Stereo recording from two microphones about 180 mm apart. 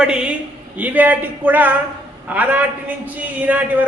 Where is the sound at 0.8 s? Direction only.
10° right (ahead or behind).